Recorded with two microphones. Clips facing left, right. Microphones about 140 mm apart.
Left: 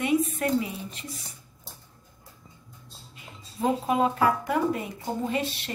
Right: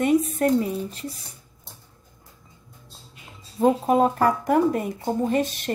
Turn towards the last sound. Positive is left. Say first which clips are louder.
# right 6 dB
turn(degrees=-45)  # may be behind; listen again after turning